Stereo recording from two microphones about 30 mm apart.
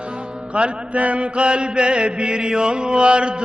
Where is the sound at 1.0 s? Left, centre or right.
Right.